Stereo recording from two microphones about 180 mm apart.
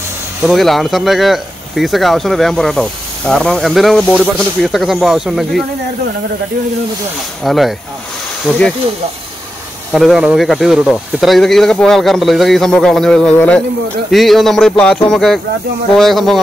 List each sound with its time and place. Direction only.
0.4 s speech: centre (ahead or behind)
7.4 s speech: centre (ahead or behind)
9.9 s speech: centre (ahead or behind)